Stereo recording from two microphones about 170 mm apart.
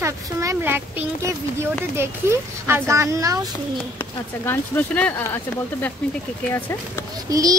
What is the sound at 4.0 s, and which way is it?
Speech, 10° left (ahead or behind).